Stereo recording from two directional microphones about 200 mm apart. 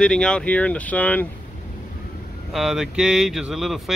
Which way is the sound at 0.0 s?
5° left (ahead or behind).